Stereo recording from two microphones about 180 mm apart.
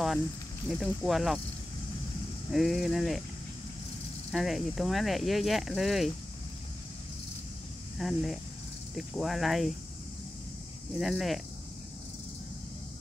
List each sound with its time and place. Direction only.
0.7 s speech: centre (ahead or behind)
2.5 s speech: centre (ahead or behind)
4.3 s speech: centre (ahead or behind)
8.0 s speech: centre (ahead or behind)
11.0 s speech: centre (ahead or behind)